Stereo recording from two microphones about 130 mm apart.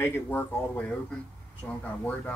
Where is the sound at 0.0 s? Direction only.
15° left (ahead or behind).